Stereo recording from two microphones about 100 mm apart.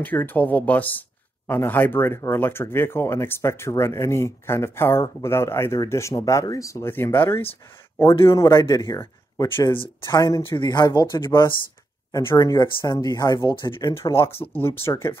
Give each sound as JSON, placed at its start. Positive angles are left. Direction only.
{"t": 0.0, "sound": "speech", "side_deg": 20}
{"t": 11.2, "sound": "speech", "side_deg": 25}
{"t": 12.4, "sound": "speech", "side_deg": 35}
{"t": 13.5, "sound": "speech", "side_deg": 50}
{"t": 13.7, "sound": "speech", "side_deg": 30}